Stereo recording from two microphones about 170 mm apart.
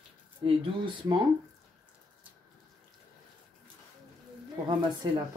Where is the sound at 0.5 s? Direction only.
30° right (ahead or behind).